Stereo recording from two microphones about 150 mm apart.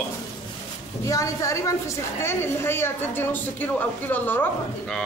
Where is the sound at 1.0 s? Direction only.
20° left (ahead or behind).